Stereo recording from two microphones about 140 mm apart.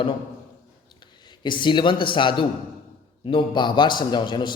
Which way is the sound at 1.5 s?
35° left (ahead or behind).